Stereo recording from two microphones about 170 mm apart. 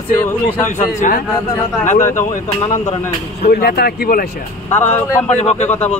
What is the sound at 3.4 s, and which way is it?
Speech, 70° left (ahead or behind).